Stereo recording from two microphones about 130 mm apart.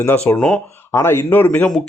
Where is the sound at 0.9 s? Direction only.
20° left (ahead or behind).